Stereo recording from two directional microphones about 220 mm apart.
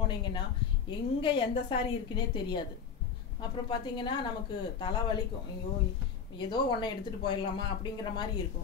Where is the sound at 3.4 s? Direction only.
20° left (ahead or behind).